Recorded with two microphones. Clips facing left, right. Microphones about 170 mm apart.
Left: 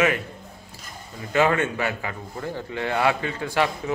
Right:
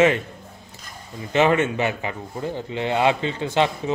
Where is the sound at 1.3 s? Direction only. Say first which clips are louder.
Right 2 dB; 20° right (ahead or behind).